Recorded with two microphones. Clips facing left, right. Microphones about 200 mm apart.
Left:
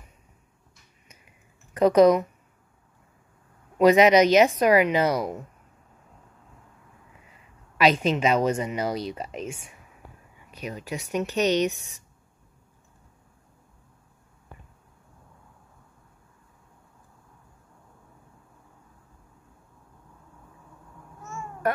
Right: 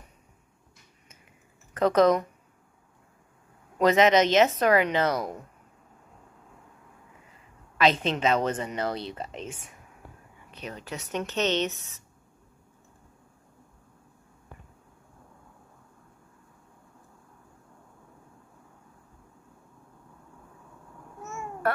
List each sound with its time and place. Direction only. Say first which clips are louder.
1.7 s speech: left 4 dB; 15° left (ahead or behind)
3.8 s a woman's voice: left 4 dB; 15° left (ahead or behind)
7.7 s a woman's voice: left 3 dB; 10° left (ahead or behind)
21.2 s babbling: even; 20° right (ahead or behind)